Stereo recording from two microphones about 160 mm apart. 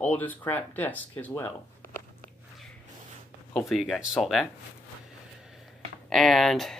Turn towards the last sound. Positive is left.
turn(degrees=0)  # may be behind; listen again after turning